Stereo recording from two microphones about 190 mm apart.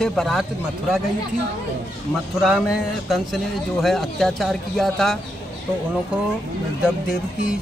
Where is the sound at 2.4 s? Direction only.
5° right (ahead or behind).